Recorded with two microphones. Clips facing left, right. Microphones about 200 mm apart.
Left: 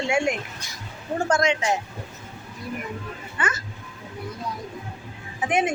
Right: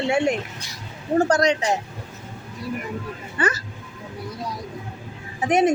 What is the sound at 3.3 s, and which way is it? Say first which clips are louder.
Speech: right 5 dB; 35° right (ahead or behind).